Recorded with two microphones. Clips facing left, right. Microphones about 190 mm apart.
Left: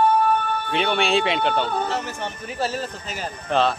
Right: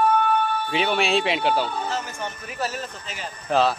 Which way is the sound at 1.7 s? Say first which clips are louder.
Left 3 dB; 65° left (ahead or behind).